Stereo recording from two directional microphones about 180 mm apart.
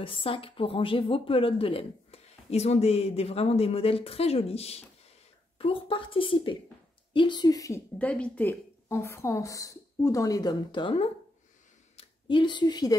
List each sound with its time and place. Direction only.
0.0 s a woman's voice: 30° left (ahead or behind)